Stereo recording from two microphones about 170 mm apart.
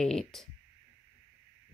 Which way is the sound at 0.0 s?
5° left (ahead or behind).